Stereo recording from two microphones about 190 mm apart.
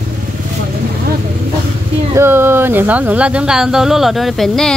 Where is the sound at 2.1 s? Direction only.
15° right (ahead or behind).